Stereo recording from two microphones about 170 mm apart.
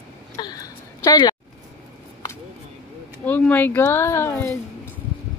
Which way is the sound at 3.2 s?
10° left (ahead or behind).